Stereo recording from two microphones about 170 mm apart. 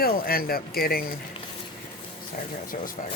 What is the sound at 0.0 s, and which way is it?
Speech, 60° left (ahead or behind).